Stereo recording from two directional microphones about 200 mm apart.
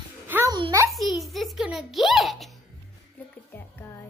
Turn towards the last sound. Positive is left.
turn(degrees=10)  # may be behind; listen again after turning